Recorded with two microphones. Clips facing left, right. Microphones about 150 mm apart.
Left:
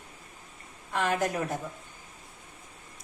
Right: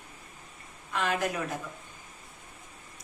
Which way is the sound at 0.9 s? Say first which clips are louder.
Left 2 dB; 40° left (ahead or behind).